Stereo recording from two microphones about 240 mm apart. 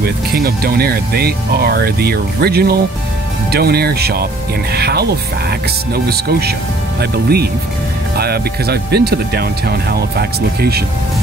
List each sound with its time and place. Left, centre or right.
0.0 s speech: right